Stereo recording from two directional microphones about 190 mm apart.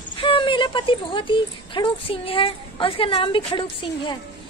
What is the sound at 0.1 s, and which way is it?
A woman's voice, 25° left (ahead or behind).